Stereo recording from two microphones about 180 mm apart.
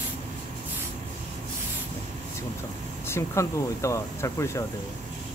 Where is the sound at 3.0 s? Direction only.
15° left (ahead or behind).